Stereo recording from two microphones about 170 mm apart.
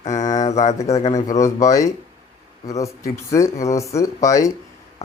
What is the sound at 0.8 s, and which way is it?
Speech, 40° left (ahead or behind).